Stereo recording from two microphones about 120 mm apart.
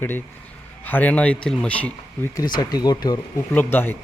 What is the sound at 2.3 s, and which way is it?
Speech, 30° left (ahead or behind).